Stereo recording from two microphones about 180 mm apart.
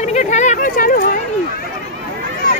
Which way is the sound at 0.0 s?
40° left (ahead or behind).